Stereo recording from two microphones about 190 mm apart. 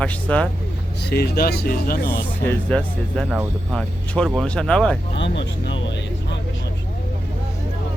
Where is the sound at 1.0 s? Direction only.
55° left (ahead or behind).